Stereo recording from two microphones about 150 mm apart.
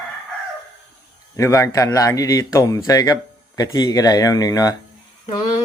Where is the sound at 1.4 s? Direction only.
20° left (ahead or behind).